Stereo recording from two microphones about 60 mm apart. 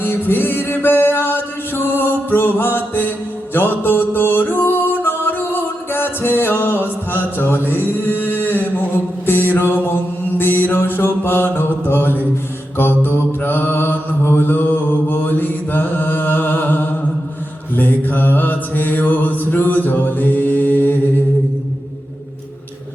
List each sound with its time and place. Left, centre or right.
0.0 s music: left
9.2 s mantra: left